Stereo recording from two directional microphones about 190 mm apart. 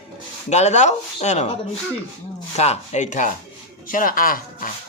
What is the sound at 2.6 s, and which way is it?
Speech, 35° left (ahead or behind).